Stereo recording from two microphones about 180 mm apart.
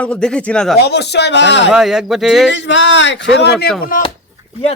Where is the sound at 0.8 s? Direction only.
65° left (ahead or behind).